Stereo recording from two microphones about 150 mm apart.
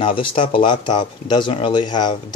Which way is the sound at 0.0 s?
35° left (ahead or behind).